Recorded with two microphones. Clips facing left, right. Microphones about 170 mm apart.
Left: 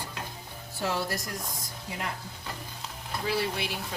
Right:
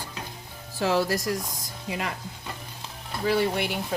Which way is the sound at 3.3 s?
60° right (ahead or behind).